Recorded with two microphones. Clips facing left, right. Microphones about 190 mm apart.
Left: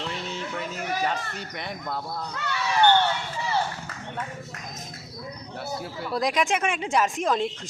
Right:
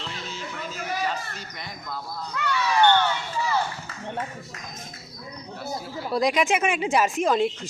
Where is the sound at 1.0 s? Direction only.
60° left (ahead or behind).